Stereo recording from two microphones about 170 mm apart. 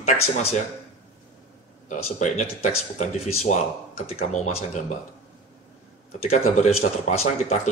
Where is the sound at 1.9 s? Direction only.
45° left (ahead or behind).